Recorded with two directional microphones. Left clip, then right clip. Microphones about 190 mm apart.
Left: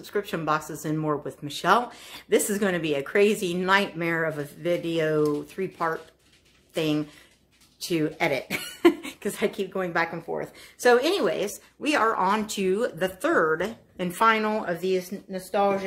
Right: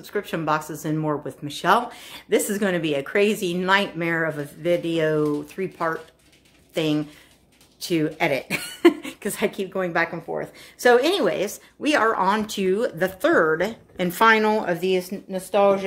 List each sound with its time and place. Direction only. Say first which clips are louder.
0.0 s speech: right 2 dB; centre (ahead or behind)
10.8 s speech: right 3 dB; 15° right (ahead or behind); by 15.8 s 30° right (ahead or behind)